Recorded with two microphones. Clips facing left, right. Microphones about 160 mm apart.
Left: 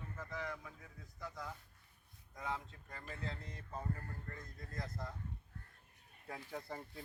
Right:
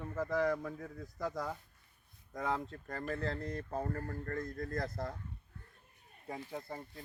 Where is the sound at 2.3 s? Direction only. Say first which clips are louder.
Right 7 dB; 70° right (ahead or behind).